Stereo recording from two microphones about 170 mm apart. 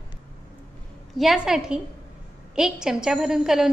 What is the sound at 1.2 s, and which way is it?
A woman's voice, centre (ahead or behind).